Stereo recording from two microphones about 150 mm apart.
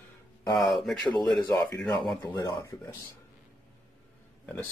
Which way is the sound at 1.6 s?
25° left (ahead or behind).